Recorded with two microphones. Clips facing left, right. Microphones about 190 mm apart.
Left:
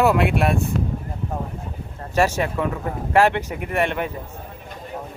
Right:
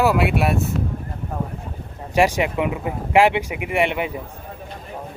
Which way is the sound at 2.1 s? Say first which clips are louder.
Right 2 dB; 15° right (ahead or behind).